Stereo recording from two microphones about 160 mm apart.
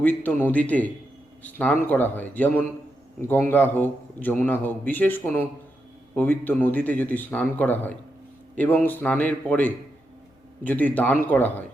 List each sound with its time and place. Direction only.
0.0 s a man's voice: 10° left (ahead or behind)